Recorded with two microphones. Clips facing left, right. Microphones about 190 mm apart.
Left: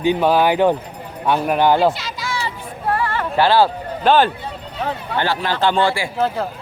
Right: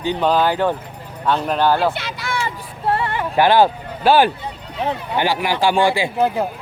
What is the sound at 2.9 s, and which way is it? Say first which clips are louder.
Music: even; 20° right (ahead or behind).